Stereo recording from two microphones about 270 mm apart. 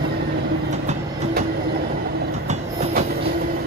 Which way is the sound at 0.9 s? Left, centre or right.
Right.